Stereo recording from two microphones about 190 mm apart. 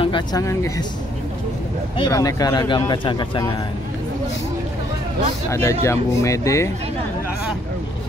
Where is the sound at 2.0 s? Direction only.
20° left (ahead or behind).